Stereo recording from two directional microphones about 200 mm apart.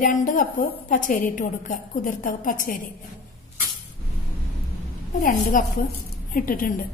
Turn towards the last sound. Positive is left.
turn(degrees=45)  # may be behind; listen again after turning